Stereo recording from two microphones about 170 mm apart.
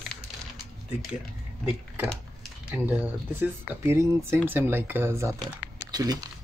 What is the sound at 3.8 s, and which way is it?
Speech, 15° right (ahead or behind).